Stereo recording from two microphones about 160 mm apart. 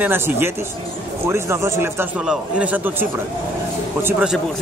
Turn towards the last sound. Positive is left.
turn(degrees=-5)  # may be behind; listen again after turning